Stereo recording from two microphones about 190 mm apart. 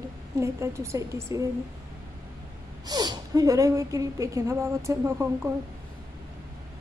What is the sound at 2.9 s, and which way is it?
A woman's voice, 20° right (ahead or behind).